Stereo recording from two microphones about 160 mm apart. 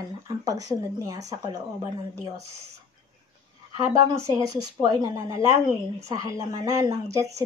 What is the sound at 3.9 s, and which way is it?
Speech, 25° right (ahead or behind).